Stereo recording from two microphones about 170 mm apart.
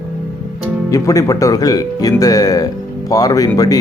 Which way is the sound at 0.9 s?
20° left (ahead or behind).